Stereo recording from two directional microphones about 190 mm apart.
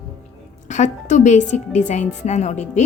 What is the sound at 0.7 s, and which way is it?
A woman's voice, 40° left (ahead or behind).